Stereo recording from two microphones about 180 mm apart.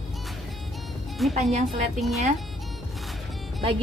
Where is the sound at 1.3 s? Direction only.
35° right (ahead or behind).